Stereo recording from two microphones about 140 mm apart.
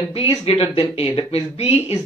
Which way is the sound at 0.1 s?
45° left (ahead or behind).